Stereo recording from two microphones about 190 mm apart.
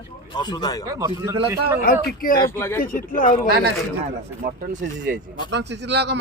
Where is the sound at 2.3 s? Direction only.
15° left (ahead or behind).